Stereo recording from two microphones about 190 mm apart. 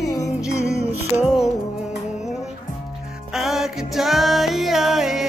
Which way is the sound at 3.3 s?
Centre (ahead or behind).